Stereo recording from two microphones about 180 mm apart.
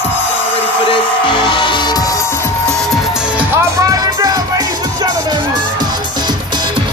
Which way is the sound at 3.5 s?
20° right (ahead or behind).